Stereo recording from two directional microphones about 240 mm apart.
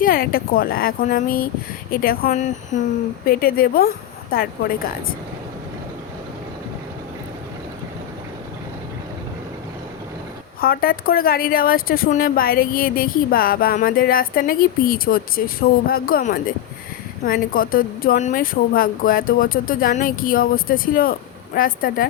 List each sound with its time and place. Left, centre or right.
0.0 s a woman's voice: left
10.6 s speech: left